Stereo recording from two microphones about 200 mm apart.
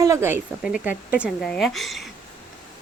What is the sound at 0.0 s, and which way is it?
Speech, 15° right (ahead or behind).